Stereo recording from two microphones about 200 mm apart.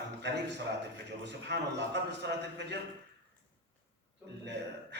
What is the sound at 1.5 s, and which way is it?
Speech, 60° right (ahead or behind).